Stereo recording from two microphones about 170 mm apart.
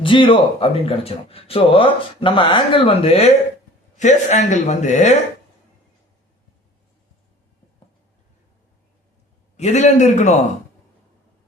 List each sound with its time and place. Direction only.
0.0 s speech: 30° left (ahead or behind)
9.6 s speech: 40° left (ahead or behind)